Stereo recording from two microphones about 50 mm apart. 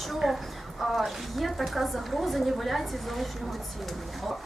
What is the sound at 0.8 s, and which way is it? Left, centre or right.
Speech, centre.